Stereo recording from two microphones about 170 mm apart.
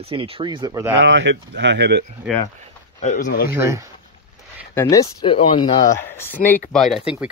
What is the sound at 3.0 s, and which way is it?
Speech, 45° left (ahead or behind).